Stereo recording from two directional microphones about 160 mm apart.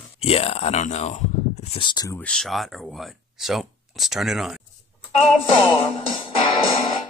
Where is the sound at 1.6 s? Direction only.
35° left (ahead or behind).